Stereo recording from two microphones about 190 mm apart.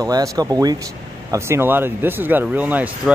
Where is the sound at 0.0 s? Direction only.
20° right (ahead or behind).